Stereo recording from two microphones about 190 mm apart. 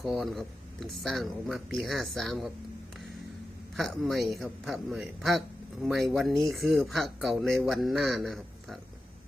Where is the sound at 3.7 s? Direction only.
Centre (ahead or behind).